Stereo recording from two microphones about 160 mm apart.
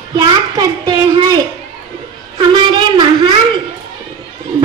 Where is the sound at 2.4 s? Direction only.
30° right (ahead or behind).